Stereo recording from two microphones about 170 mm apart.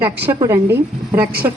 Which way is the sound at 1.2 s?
65° right (ahead or behind).